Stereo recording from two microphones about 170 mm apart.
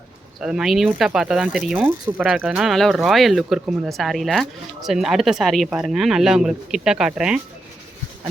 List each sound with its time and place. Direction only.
0.3 s speech: 5° right (ahead or behind)